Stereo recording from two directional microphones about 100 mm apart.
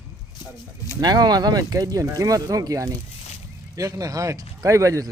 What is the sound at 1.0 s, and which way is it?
Speech, 45° right (ahead or behind).